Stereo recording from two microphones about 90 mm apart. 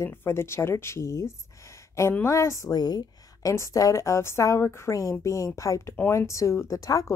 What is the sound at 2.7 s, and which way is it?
Speech, 50° left (ahead or behind).